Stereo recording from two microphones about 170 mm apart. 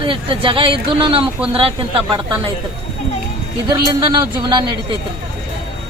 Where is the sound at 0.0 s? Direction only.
30° right (ahead or behind).